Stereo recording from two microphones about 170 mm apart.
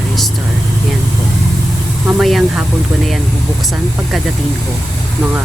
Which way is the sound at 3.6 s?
Centre (ahead or behind).